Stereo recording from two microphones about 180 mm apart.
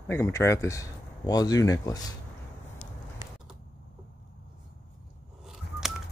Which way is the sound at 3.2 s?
25° left (ahead or behind).